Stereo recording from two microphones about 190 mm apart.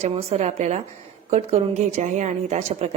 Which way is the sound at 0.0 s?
35° right (ahead or behind).